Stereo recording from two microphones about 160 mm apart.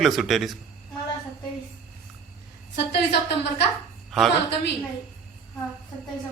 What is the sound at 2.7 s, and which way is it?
Speech, 90° left.